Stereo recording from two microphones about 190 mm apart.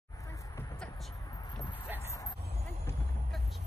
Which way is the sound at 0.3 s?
15° left (ahead or behind).